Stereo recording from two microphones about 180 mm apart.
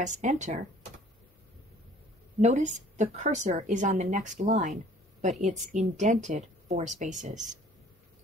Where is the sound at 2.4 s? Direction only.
40° right (ahead or behind).